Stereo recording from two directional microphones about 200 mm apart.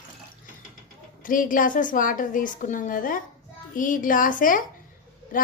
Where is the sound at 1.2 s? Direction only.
45° left (ahead or behind).